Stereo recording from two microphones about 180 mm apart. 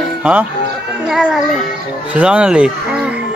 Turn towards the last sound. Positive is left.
turn(degrees=-5)  # may be behind; listen again after turning